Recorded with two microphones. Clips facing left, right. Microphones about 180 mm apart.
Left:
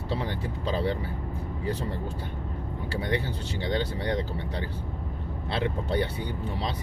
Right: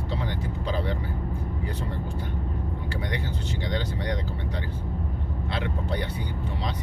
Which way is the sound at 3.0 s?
30° left (ahead or behind).